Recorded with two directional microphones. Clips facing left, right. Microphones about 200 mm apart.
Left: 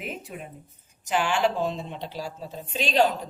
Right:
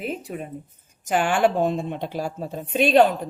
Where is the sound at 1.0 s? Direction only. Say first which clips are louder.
Right 4 dB; 50° right (ahead or behind).